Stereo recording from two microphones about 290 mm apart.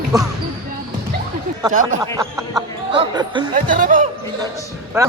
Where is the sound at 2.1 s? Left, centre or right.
Centre.